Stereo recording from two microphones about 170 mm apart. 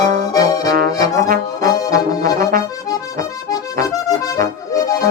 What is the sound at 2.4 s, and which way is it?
Accordion, 55° right (ahead or behind).